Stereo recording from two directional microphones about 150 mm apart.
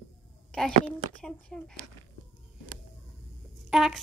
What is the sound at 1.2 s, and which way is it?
Speech, 5° left (ahead or behind).